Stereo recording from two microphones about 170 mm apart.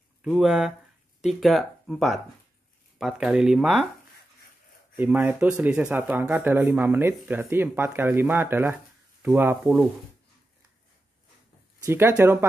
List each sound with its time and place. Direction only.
0.2 s speech: 5° right (ahead or behind)
4.9 s speech: 10° right (ahead or behind)
11.8 s speech: 15° right (ahead or behind)